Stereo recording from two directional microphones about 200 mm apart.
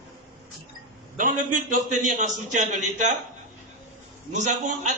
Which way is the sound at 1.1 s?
40° right (ahead or behind).